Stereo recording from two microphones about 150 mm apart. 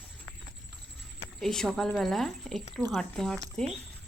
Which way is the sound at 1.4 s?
Centre (ahead or behind).